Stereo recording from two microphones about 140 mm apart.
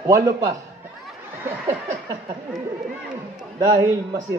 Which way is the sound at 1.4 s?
20° right (ahead or behind).